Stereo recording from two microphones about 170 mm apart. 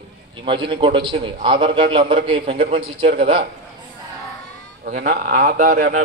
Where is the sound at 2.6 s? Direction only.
60° right (ahead or behind).